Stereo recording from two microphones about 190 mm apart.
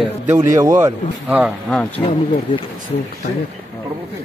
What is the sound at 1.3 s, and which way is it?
Speech, 5° right (ahead or behind).